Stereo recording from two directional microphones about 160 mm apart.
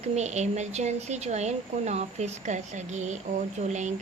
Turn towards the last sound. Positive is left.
turn(degrees=-45)  # may be behind; listen again after turning